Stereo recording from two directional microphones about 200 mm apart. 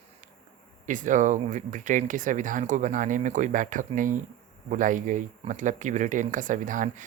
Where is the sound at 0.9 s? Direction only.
40° right (ahead or behind).